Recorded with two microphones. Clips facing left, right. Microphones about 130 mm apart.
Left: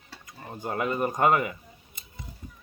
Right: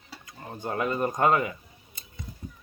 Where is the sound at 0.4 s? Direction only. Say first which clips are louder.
Even; 5° left (ahead or behind).